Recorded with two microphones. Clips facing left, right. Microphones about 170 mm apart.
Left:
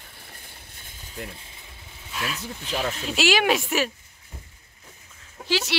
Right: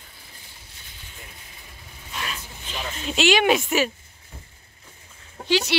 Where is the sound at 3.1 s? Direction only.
Centre (ahead or behind).